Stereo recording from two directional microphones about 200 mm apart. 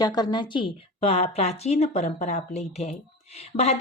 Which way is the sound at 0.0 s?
20° left (ahead or behind).